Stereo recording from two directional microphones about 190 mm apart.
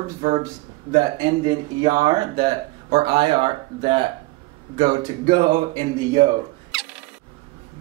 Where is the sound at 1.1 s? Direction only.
25° right (ahead or behind).